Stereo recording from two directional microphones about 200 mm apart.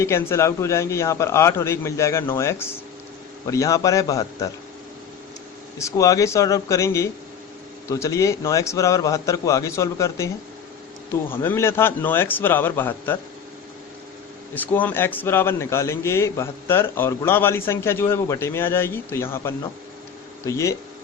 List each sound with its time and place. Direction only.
0.0 s a man's voice: 15° left (ahead or behind)
5.8 s a man's voice: 15° left (ahead or behind)
14.5 s a man's voice: 10° left (ahead or behind)